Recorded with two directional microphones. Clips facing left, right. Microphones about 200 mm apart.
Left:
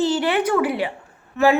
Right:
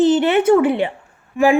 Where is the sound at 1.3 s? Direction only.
15° right (ahead or behind).